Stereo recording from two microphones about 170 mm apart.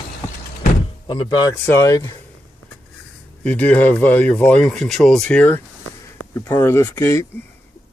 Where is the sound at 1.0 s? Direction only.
25° left (ahead or behind).